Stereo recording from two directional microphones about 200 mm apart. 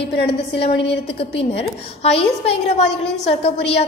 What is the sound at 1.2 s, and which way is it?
A woman's voice, 30° left (ahead or behind).